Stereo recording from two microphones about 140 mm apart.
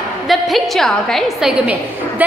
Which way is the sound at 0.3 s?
Centre (ahead or behind).